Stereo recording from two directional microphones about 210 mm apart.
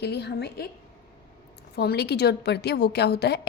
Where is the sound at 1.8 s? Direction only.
50° left (ahead or behind).